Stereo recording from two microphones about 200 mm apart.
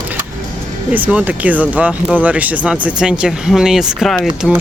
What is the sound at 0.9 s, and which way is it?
Speech, 5° right (ahead or behind).